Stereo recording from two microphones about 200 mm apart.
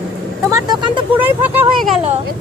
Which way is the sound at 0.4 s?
20° right (ahead or behind).